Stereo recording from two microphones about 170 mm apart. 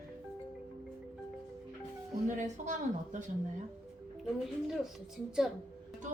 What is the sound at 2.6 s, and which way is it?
Speech, 45° right (ahead or behind).